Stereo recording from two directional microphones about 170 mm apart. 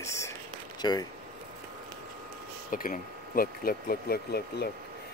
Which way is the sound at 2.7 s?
55° left (ahead or behind).